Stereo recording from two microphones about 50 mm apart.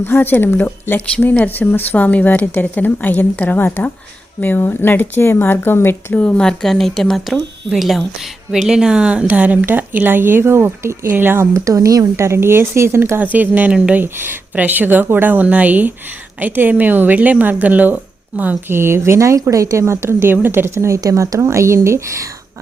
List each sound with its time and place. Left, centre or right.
0.0 s a woman's voice: left
6.3 s a woman's voice: centre
7.7 s speech: centre; by 11.1 s right
11.1 s speech: right
11.5 s speech: right
13.1 s a woman's voice: right
14.0 s speech: right
14.5 s a woman's voice: right
18.7 s speech: right
20.7 s speech: right
21.8 s a woman's voice: right